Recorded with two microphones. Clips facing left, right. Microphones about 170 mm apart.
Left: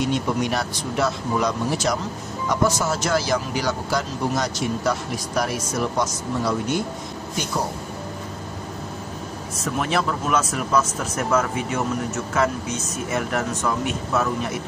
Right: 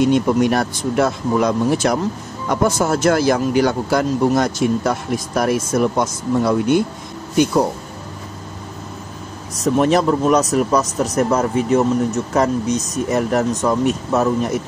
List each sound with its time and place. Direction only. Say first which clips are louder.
0.1 s speech: right 8 dB; 50° right (ahead or behind)
9.6 s speech: right 9 dB; 35° right (ahead or behind)